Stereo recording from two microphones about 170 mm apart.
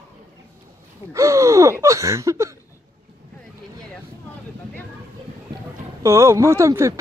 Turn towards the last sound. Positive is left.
turn(degrees=-15)  # may be behind; listen again after turning